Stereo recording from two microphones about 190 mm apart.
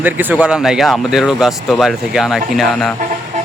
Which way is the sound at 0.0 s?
10° right (ahead or behind).